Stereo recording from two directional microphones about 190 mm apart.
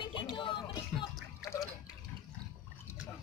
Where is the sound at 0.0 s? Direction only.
25° left (ahead or behind).